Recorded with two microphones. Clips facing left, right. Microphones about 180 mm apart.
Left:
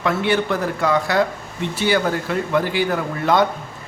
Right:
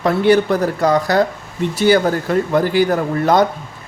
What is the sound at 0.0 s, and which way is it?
Speech, 40° right (ahead or behind).